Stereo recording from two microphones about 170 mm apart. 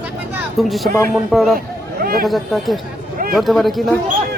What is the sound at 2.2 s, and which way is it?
A man's voice, centre (ahead or behind).